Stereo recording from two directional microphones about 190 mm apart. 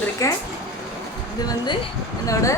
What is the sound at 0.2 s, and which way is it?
Speech, 15° left (ahead or behind).